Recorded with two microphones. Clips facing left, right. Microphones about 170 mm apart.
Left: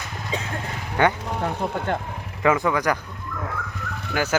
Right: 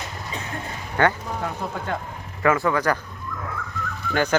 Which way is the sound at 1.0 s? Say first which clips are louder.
Even; 15° left (ahead or behind).